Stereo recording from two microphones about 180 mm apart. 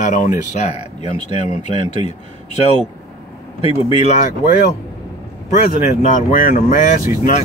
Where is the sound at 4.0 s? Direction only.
40° left (ahead or behind).